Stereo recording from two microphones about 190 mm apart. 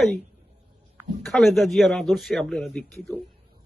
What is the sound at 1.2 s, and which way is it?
A man's voice, centre (ahead or behind).